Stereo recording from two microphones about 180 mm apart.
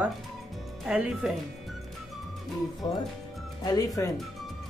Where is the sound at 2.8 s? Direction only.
30° left (ahead or behind).